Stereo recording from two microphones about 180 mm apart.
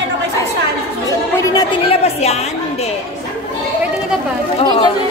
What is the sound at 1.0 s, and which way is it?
Chatter, 20° left (ahead or behind).